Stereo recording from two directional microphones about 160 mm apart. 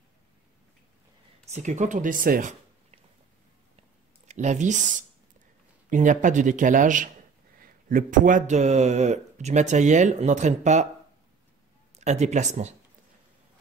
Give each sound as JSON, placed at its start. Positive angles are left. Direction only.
{"t": 1.4, "sound": "speech", "side_deg": -45}
{"t": 4.3, "sound": "speech", "side_deg": -45}
{"t": 12.0, "sound": "speech", "side_deg": -45}